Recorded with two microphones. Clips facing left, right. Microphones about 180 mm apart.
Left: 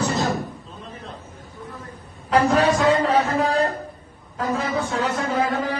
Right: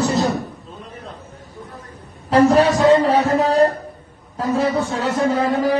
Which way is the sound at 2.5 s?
40° right (ahead or behind).